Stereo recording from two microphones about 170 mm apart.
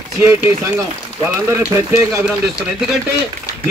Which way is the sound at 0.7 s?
15° right (ahead or behind).